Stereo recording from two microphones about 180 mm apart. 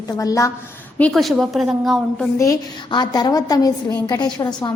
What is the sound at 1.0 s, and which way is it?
A woman's voice, 5° left (ahead or behind).